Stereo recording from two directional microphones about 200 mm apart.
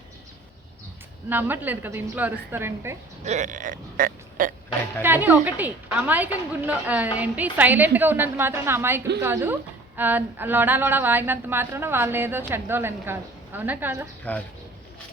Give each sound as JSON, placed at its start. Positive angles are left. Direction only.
{"t": 1.3, "sound": "a woman's voice", "side_deg": -10}
{"t": 3.2, "sound": "burping", "side_deg": -35}
{"t": 5.0, "sound": "a woman's voice", "side_deg": -10}